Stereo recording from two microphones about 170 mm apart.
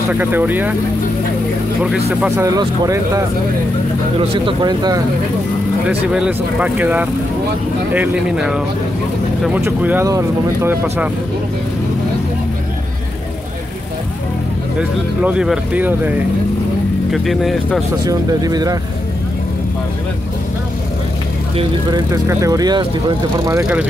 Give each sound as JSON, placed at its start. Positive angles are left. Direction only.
{"t": 0.1, "sound": "speech", "side_deg": -10}
{"t": 2.0, "sound": "speech", "side_deg": -15}
{"t": 5.9, "sound": "speech", "side_deg": -5}
{"t": 15.2, "sound": "speech", "side_deg": -5}
{"t": 18.0, "sound": "speech", "side_deg": -25}
{"t": 21.5, "sound": "speech", "side_deg": -20}
{"t": 23.6, "sound": "speech", "side_deg": -10}